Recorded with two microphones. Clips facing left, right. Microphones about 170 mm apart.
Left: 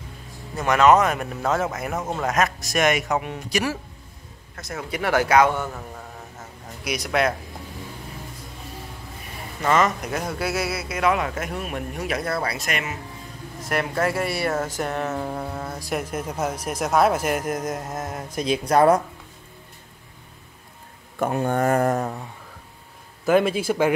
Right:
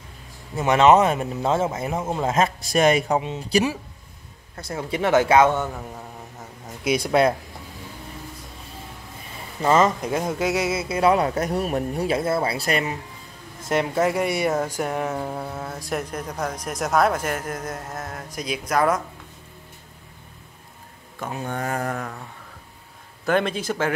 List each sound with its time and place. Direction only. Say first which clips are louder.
0.7 s speech: right 1 dB; 25° right (ahead or behind)
6.8 s speech: right 4 dB; 25° right (ahead or behind)
9.6 s speech: right 2 dB; 30° right (ahead or behind)
13.6 s speech: right 3 dB; 20° right (ahead or behind); by 19.0 s 30° left (ahead or behind)
21.2 s speech: left 7 dB; 55° left (ahead or behind)
23.2 s speech: left 3 dB; 5° left (ahead or behind)